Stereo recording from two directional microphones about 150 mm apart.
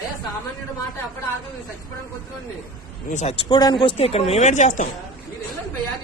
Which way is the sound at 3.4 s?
30° left (ahead or behind).